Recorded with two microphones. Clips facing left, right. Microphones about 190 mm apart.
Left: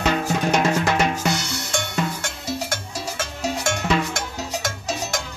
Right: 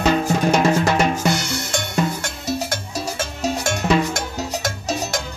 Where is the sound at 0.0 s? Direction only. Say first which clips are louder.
Right 4 dB; 30° right (ahead or behind).